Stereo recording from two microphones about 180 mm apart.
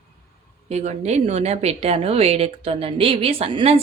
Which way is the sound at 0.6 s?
40° right (ahead or behind).